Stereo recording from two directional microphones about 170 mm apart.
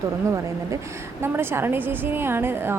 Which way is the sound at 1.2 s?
15° right (ahead or behind).